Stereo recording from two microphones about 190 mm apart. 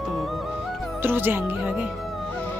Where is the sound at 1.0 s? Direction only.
10° right (ahead or behind).